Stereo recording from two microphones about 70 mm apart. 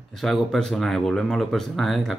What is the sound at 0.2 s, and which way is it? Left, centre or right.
Speech, centre.